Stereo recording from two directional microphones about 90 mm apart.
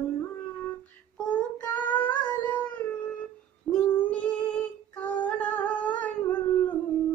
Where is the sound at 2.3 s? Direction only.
15° left (ahead or behind).